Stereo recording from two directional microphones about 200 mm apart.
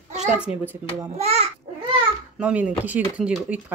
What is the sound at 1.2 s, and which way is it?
Speech, 30° right (ahead or behind).